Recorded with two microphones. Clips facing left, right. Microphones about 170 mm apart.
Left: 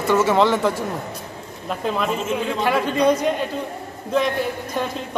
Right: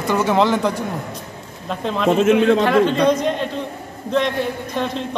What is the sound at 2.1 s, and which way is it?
Speech, 75° right (ahead or behind).